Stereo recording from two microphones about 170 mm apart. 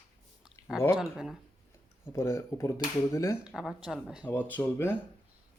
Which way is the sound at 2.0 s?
15° left (ahead or behind).